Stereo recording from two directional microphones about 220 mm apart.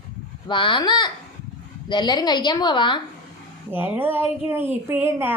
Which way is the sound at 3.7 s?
10° right (ahead or behind).